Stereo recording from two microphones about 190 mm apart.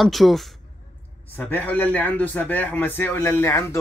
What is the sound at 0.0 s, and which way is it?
A man's voice, centre (ahead or behind).